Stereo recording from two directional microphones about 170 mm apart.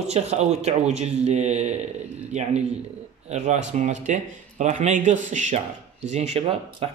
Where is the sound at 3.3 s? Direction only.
45° right (ahead or behind).